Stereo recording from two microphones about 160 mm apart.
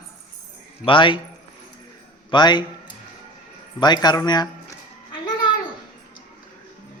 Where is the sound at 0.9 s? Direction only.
30° left (ahead or behind).